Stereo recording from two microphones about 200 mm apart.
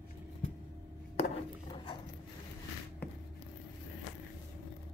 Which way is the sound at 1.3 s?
25° left (ahead or behind).